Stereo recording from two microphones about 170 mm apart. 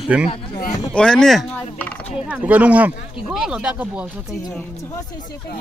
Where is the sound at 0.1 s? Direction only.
10° right (ahead or behind).